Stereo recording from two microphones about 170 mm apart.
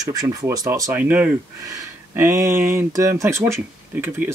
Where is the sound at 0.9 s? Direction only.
10° right (ahead or behind).